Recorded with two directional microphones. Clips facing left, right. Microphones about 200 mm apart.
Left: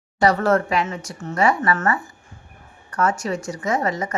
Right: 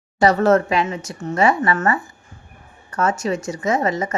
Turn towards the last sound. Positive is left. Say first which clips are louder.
# right 3 dB
turn(degrees=-25)  # may be behind; listen again after turning